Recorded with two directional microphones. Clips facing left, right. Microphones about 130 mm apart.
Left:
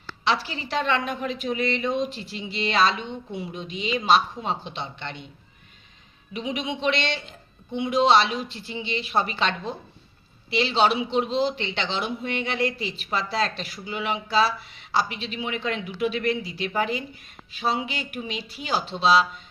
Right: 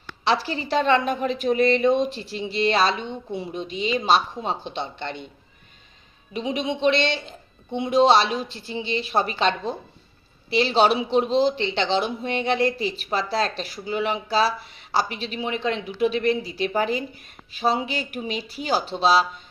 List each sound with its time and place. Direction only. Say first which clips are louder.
0.3 s speech: right 3 dB; 40° right (ahead or behind)
6.3 s speech: right 3 dB; 30° right (ahead or behind)